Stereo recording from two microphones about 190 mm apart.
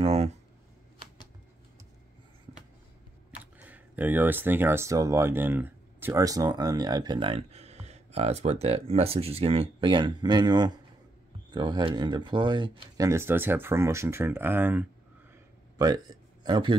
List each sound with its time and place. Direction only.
0.0 s speech: 35° right (ahead or behind)
3.5 s speech: 10° right (ahead or behind)
15.8 s speech: 20° right (ahead or behind)